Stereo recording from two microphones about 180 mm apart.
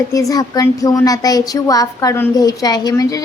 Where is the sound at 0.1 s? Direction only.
20° left (ahead or behind).